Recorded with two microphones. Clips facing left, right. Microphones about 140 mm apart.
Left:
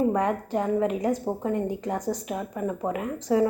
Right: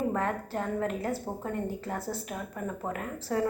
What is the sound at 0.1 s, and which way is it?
A woman's voice, 15° left (ahead or behind).